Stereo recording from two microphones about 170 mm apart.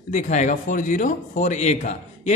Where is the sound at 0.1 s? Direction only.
45° left (ahead or behind).